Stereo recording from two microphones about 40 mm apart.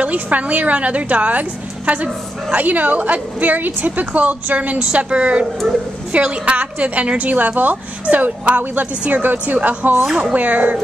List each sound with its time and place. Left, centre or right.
0.0 s a woman's voice: right